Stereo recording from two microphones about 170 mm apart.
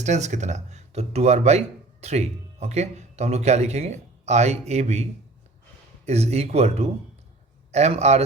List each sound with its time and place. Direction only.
0.0 s speech: 45° right (ahead or behind)
6.1 s speech: 40° right (ahead or behind)